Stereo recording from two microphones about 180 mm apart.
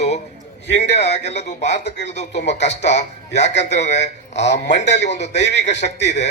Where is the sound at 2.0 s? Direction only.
40° left (ahead or behind).